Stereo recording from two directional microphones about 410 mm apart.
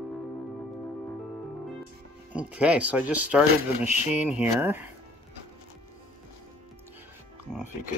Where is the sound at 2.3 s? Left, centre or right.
Centre.